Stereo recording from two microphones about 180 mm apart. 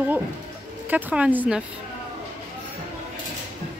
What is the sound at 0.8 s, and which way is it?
Speech, 10° right (ahead or behind).